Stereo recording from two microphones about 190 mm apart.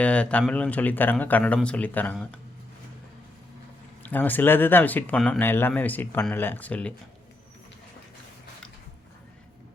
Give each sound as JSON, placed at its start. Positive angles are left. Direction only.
{"t": 0.0, "sound": "speech", "side_deg": 5}
{"t": 4.0, "sound": "speech", "side_deg": 10}